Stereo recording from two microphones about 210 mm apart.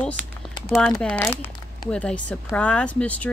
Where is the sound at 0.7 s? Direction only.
5° left (ahead or behind).